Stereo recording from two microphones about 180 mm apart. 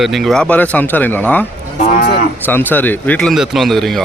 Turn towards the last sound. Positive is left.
turn(degrees=0)  # may be behind; listen again after turning